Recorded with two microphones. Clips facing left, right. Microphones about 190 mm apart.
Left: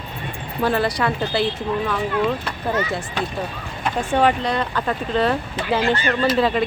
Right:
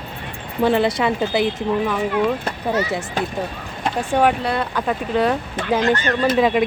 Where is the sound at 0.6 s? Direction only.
25° right (ahead or behind).